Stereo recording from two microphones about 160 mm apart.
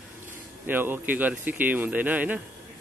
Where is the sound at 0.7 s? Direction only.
10° right (ahead or behind).